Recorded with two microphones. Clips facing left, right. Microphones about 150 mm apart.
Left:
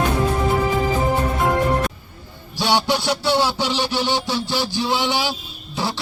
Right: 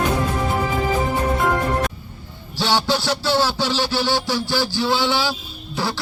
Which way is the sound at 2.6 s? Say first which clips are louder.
Left 1 dB; 15° left (ahead or behind).